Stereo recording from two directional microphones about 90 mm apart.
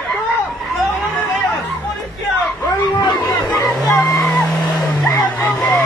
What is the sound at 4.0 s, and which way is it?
Speech, 30° left (ahead or behind).